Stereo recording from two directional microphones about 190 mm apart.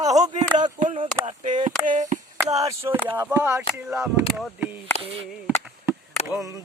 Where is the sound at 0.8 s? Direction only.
35° right (ahead or behind).